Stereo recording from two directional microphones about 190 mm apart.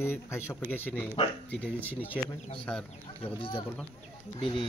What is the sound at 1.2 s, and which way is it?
Speech, 30° left (ahead or behind).